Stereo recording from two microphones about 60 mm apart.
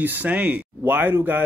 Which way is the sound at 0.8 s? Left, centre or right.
Right.